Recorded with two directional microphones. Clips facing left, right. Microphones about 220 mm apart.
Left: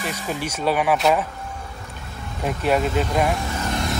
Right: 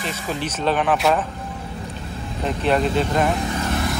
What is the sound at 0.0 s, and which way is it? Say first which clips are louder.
Speech: right 1 dB; 10° left (ahead or behind).